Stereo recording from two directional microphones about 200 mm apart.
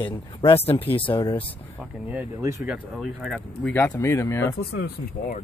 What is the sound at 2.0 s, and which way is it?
Speech, 10° right (ahead or behind).